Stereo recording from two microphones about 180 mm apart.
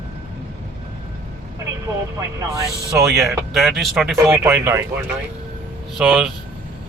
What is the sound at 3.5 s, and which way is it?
Speech, centre (ahead or behind).